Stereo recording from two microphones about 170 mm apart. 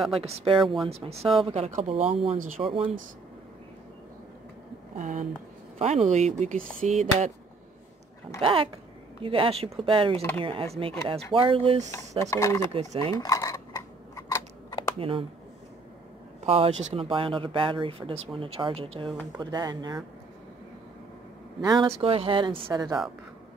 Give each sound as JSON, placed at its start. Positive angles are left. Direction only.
{"t": 0.1, "sound": "speech", "side_deg": -35}
{"t": 4.9, "sound": "speech", "side_deg": -45}
{"t": 8.4, "sound": "speech", "side_deg": -30}
{"t": 12.3, "sound": "speech", "side_deg": 20}
{"t": 12.6, "sound": "speech", "side_deg": -35}
{"t": 13.1, "sound": "a sound", "side_deg": 20}
{"t": 15.0, "sound": "speech", "side_deg": -30}
{"t": 16.4, "sound": "speech", "side_deg": -35}
{"t": 21.5, "sound": "speech", "side_deg": -25}